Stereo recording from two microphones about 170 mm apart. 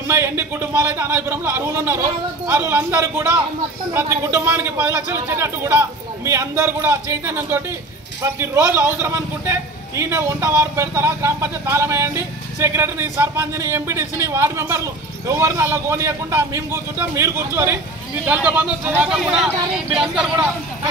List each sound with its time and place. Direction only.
0.1 s a man's voice: 15° right (ahead or behind)